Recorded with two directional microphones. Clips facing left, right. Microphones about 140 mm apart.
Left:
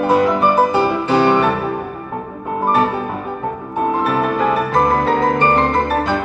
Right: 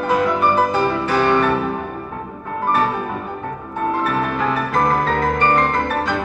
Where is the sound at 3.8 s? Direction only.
20° left (ahead or behind).